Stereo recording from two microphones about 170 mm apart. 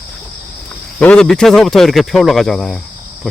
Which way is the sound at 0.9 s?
5° left (ahead or behind).